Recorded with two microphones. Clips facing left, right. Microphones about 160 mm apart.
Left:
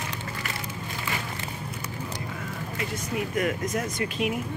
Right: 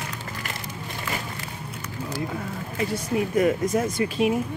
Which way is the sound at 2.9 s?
30° right (ahead or behind).